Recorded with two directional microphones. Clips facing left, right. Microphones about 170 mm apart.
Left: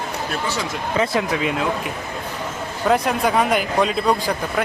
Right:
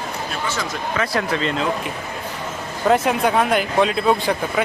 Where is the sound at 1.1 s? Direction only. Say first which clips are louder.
Even; 10° left (ahead or behind).